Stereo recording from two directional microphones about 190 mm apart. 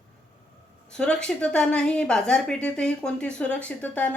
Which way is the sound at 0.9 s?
5° left (ahead or behind).